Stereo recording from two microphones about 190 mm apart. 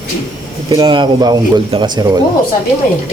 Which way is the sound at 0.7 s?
25° right (ahead or behind).